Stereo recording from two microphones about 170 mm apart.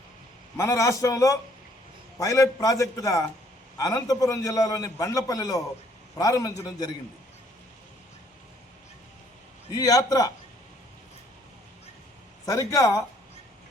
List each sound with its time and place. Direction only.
0.5 s a man's voice: 20° left (ahead or behind)
9.7 s a man's voice: 20° left (ahead or behind)
12.5 s a man's voice: 20° left (ahead or behind)